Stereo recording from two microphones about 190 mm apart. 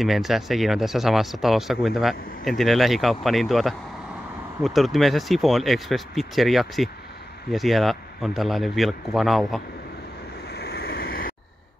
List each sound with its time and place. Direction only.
0.0 s speech: centre (ahead or behind)
10.5 s vehicle: 60° left (ahead or behind)